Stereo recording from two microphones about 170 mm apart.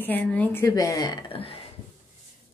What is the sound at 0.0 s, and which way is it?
A woman's voice, 10° left (ahead or behind).